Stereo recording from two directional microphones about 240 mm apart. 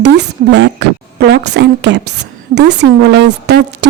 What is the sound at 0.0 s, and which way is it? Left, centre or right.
Speech, right.